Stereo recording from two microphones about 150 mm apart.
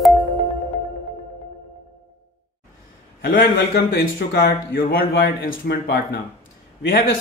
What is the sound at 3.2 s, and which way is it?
A man's voice, 80° left.